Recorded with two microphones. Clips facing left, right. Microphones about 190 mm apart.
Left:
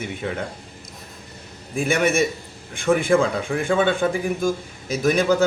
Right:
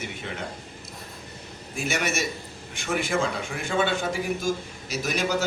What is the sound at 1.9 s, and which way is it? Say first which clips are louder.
A man's voice: left 8 dB; 55° left (ahead or behind).